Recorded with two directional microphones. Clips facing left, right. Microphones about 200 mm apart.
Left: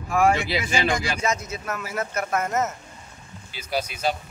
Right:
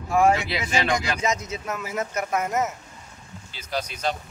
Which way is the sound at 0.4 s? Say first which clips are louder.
Left 2 dB; centre (ahead or behind).